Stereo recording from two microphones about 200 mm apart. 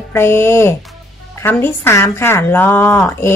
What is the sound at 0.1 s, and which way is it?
A woman's voice, 10° left (ahead or behind).